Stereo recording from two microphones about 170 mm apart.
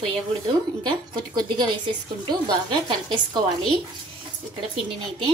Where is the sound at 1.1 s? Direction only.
25° right (ahead or behind).